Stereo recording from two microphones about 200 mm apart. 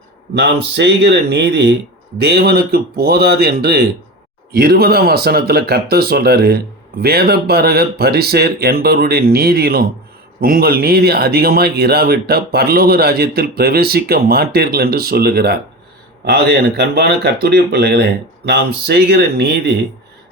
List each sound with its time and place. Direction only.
0.3 s speech: 60° right (ahead or behind)